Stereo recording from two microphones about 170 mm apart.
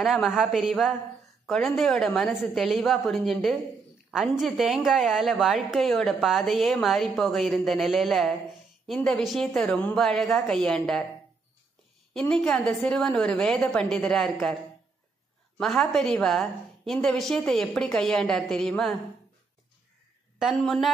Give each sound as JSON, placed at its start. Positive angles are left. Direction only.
{"t": 0.0, "sound": "a woman's voice", "side_deg": 0}
{"t": 12.1, "sound": "a woman's voice", "side_deg": 5}
{"t": 15.5, "sound": "a woman's voice", "side_deg": 5}
{"t": 20.3, "sound": "a woman's voice", "side_deg": 0}